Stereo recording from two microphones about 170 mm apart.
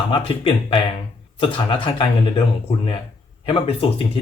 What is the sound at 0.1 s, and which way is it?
Speech, 30° left (ahead or behind).